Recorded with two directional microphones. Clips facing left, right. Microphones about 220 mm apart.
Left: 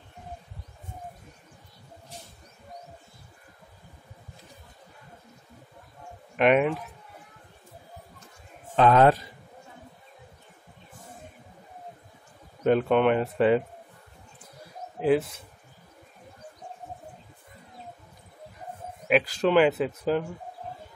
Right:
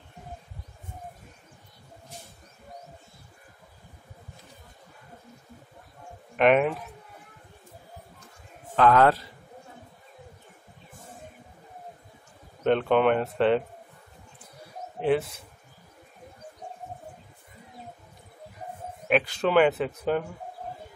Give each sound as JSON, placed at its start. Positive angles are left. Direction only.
{"t": 6.3, "sound": "speech", "side_deg": 0}
{"t": 8.7, "sound": "a man's voice", "side_deg": 20}
{"t": 12.6, "sound": "speech", "side_deg": 0}
{"t": 15.0, "sound": "speech", "side_deg": 0}
{"t": 19.0, "sound": "speech", "side_deg": 0}